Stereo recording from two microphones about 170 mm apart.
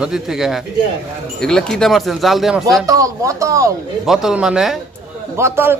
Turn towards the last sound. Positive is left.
turn(degrees=-15)  # may be behind; listen again after turning